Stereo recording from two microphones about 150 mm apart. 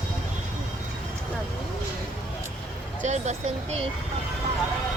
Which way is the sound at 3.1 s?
50° right (ahead or behind).